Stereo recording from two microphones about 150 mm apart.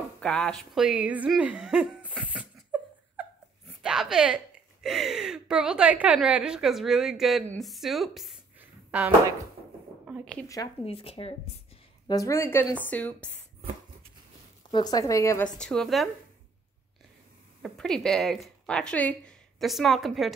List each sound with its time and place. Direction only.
0.2 s speech: 5° left (ahead or behind)
0.7 s a sound: 5° right (ahead or behind)
4.8 s a woman's voice: 5° right (ahead or behind)
8.5 s a sound: 10° right (ahead or behind)
10.9 s speech: 40° left (ahead or behind)
12.1 s speech: 20° left (ahead or behind)
14.7 s speech: 25° left (ahead or behind)
15.6 s a woman's voice: 5° left (ahead or behind)
17.6 s a woman's voice: centre (ahead or behind)